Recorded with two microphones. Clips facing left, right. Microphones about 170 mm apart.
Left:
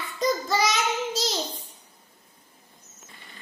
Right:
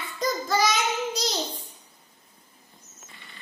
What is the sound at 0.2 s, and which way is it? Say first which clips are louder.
Child singing: left 1 dB; centre (ahead or behind).